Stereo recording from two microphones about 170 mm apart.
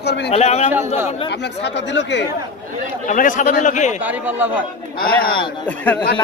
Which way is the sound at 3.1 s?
50° left (ahead or behind).